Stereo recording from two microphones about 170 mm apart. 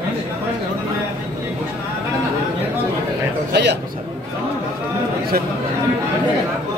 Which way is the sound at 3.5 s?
85° right.